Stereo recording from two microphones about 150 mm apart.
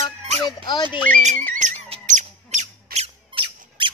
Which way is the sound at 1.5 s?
50° right (ahead or behind).